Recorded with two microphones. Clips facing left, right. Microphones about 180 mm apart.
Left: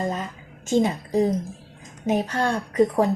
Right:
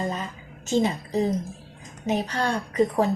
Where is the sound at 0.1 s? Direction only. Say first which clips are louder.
Left 2 dB; 50° left (ahead or behind).